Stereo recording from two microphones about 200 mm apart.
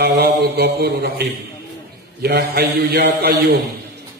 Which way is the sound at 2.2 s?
50° right (ahead or behind).